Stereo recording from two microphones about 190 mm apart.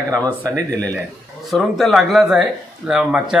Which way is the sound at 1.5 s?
Centre (ahead or behind).